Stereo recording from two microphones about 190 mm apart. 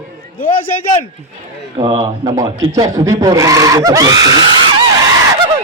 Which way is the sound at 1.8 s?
25° right (ahead or behind).